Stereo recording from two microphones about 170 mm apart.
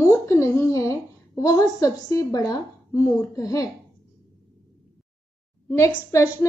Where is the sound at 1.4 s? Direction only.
20° left (ahead or behind).